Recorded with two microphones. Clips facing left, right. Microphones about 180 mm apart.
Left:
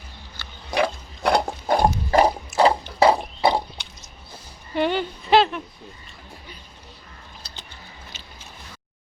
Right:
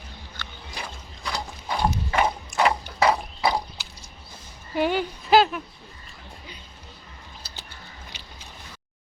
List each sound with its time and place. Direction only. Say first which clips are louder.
0.7 s pig: left 17 dB; 70° left (ahead or behind); by 2.3 s 40° left (ahead or behind)
2.5 s water: left 5 dB; 5° left (ahead or behind)
3.0 s horse: left 4 dB; 30° left (ahead or behind)
3.8 s a sound: left 1 dB; 5° right (ahead or behind)
8.1 s biting: left 1 dB; 15° right (ahead or behind)